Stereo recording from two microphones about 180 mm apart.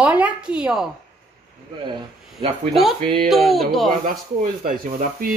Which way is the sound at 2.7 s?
Centre (ahead or behind).